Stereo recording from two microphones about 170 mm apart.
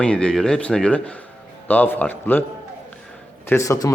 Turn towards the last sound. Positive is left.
turn(degrees=20)  # may be behind; listen again after turning